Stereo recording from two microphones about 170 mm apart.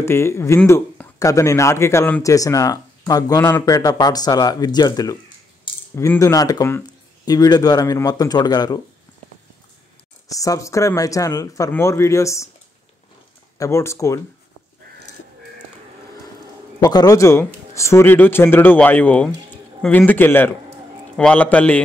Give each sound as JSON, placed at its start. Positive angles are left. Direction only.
{"t": 0.0, "sound": "speech", "side_deg": 15}
{"t": 10.2, "sound": "speech", "side_deg": 20}
{"t": 13.6, "sound": "speech", "side_deg": 15}
{"t": 16.8, "sound": "speech", "side_deg": 20}